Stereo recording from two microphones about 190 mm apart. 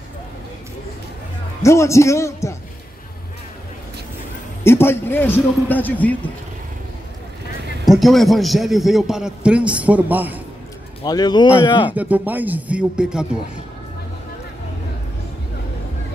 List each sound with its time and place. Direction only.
1.6 s a man's voice: 15° left (ahead or behind)
4.6 s a man's voice: 10° left (ahead or behind)
7.8 s a man's voice: centre (ahead or behind)
11.0 s a man's voice: 20° left (ahead or behind)
11.9 s speech: 10° right (ahead or behind)